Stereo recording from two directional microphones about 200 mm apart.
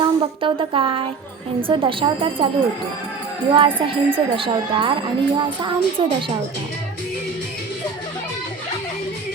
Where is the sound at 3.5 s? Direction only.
25° right (ahead or behind).